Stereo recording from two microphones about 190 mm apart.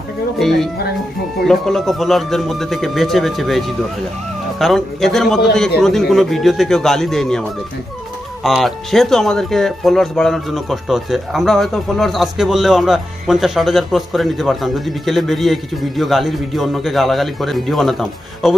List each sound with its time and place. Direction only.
0.4 s speech: centre (ahead or behind)
8.5 s speech: centre (ahead or behind)